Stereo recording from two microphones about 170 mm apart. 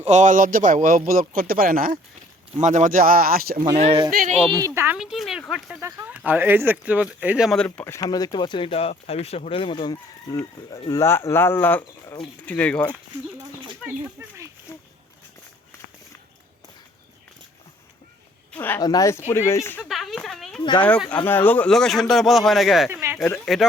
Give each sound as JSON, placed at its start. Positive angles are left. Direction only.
{"t": 0.0, "sound": "a man's voice", "side_deg": -45}
{"t": 2.6, "sound": "a man's voice", "side_deg": -45}
{"t": 3.8, "sound": "speech", "side_deg": -40}
{"t": 4.6, "sound": "speech", "side_deg": -15}
{"t": 4.9, "sound": "speech", "side_deg": 0}
{"t": 13.8, "sound": "speech", "side_deg": -15}
{"t": 18.5, "sound": "speech", "side_deg": 10}
{"t": 19.9, "sound": "speech", "side_deg": 0}
{"t": 20.6, "sound": "speech", "side_deg": 25}
{"t": 21.2, "sound": "speech", "side_deg": 10}
{"t": 22.9, "sound": "speech", "side_deg": -15}
{"t": 23.5, "sound": "speech", "side_deg": 0}